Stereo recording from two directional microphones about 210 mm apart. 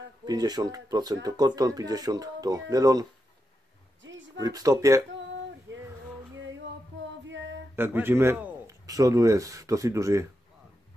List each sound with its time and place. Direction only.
0.2 s speech: 20° right (ahead or behind)
4.0 s a sound: 60° right (ahead or behind)
4.4 s speech: 15° right (ahead or behind)
7.2 s female singing: 60° right (ahead or behind)
7.7 s a man's voice: 10° right (ahead or behind)